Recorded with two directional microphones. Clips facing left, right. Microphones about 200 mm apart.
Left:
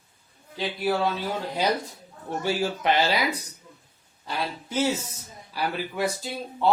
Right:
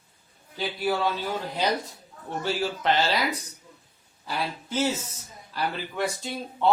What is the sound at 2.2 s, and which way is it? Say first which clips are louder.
Speech: left 2 dB; 15° left (ahead or behind).